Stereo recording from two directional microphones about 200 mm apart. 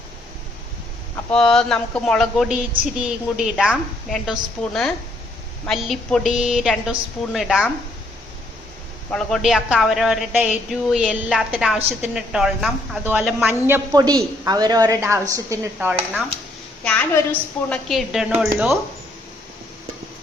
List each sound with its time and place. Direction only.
1.1 s a woman's voice: 5° left (ahead or behind)
9.1 s a woman's voice: centre (ahead or behind)
13.7 s a woman's voice: 15° right (ahead or behind)
16.8 s a woman's voice: 5° left (ahead or behind)